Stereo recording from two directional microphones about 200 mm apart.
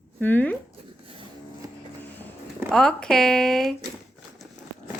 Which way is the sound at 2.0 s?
10° left (ahead or behind).